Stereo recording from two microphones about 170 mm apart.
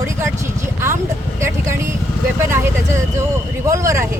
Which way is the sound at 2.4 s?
15° right (ahead or behind).